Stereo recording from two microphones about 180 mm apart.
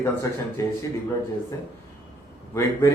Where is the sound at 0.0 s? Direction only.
15° left (ahead or behind).